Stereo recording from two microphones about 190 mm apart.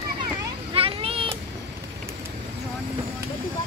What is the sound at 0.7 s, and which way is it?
Vehicle, 30° right (ahead or behind).